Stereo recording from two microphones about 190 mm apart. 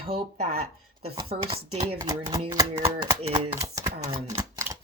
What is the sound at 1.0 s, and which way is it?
Speech, 30° right (ahead or behind).